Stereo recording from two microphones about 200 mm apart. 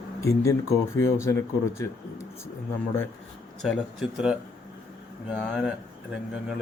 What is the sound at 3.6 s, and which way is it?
Speech, centre (ahead or behind).